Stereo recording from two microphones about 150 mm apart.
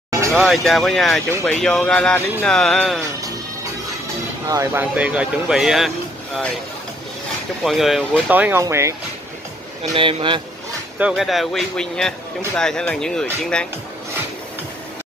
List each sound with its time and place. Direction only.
0.3 s speech: centre (ahead or behind)
4.5 s speech: 20° right (ahead or behind)
4.9 s speech: 10° right (ahead or behind)
7.6 s speech: centre (ahead or behind)
8.3 s speech: 10° right (ahead or behind)
9.9 s speech: 35° right (ahead or behind)
11.0 s speech: 5° right (ahead or behind)